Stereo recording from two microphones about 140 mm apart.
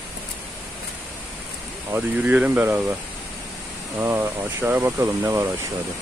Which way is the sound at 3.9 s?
15° right (ahead or behind).